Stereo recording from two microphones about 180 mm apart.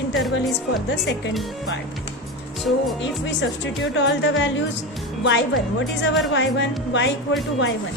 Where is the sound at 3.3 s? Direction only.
80° left.